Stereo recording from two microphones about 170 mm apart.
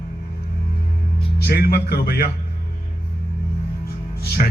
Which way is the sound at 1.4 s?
65° left (ahead or behind).